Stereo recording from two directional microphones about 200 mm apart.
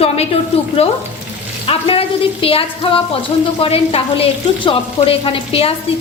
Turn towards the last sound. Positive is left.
turn(degrees=30)  # may be behind; listen again after turning